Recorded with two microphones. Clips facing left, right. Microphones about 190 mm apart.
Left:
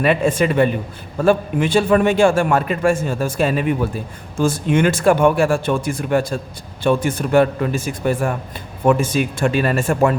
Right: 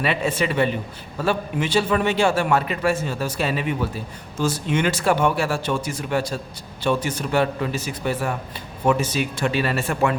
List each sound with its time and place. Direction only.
0.0 s a man's voice: 50° left (ahead or behind)